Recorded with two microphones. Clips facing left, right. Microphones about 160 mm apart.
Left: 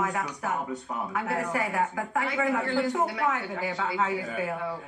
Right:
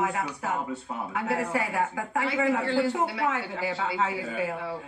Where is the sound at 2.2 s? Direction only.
30° right (ahead or behind).